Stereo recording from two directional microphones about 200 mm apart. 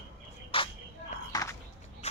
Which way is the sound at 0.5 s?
25° left (ahead or behind).